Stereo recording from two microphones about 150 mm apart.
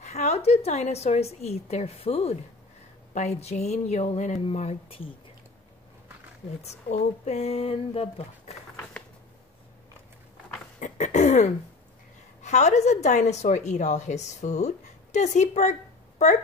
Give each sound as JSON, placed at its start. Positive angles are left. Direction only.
{"t": 0.0, "sound": "a woman's voice", "side_deg": 50}
{"t": 6.6, "sound": "a woman's voice", "side_deg": 50}
{"t": 10.8, "sound": "a sound", "side_deg": 55}
{"t": 12.4, "sound": "a woman's voice", "side_deg": 50}